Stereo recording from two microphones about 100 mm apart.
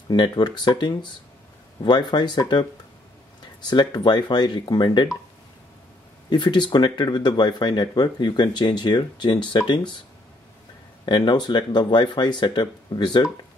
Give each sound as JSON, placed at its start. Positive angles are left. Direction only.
{"t": 0.1, "sound": "speech", "side_deg": 45}
{"t": 3.6, "sound": "speech", "side_deg": 45}
{"t": 6.3, "sound": "speech", "side_deg": 50}
{"t": 11.1, "sound": "speech", "side_deg": 50}